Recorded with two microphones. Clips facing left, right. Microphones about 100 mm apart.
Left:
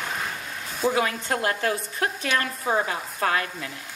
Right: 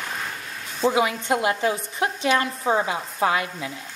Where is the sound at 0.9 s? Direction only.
15° right (ahead or behind).